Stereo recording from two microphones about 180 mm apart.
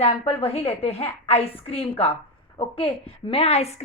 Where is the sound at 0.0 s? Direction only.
35° left (ahead or behind).